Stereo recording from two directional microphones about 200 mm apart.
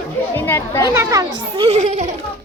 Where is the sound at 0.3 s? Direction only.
10° left (ahead or behind).